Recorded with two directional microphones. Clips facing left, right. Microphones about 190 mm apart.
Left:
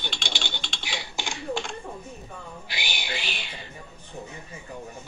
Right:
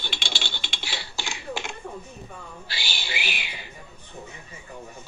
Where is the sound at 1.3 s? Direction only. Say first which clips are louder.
Left 4 dB; 5° right (ahead or behind).